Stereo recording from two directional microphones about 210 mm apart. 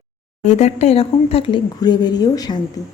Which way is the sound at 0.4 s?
30° left (ahead or behind).